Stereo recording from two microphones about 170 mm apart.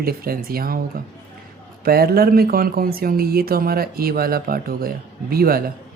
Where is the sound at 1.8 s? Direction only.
65° right (ahead or behind).